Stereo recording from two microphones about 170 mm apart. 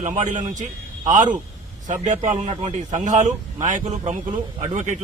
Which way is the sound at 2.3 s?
30° right (ahead or behind).